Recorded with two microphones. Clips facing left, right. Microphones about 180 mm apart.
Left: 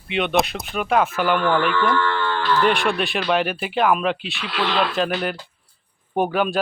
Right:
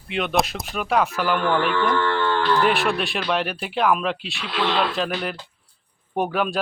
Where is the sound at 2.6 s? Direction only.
Centre (ahead or behind).